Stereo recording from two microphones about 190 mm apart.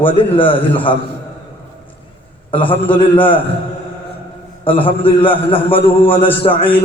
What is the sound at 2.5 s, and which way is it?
Speech, 25° left (ahead or behind).